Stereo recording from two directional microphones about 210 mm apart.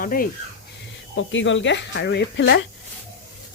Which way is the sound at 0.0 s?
40° left (ahead or behind).